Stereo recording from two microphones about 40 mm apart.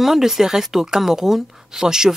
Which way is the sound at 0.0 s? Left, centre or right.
Centre.